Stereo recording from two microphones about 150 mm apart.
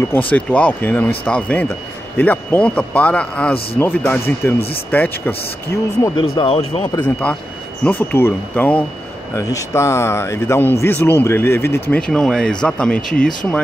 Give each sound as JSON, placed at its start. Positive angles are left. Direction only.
{"t": 0.1, "sound": "speech", "side_deg": 10}
{"t": 6.1, "sound": "speech", "side_deg": 35}
{"t": 7.2, "sound": "speech", "side_deg": 10}
{"t": 9.3, "sound": "speech", "side_deg": 20}
{"t": 11.9, "sound": "speech", "side_deg": 5}